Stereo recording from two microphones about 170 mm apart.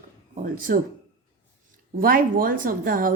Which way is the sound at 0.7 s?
55° right (ahead or behind).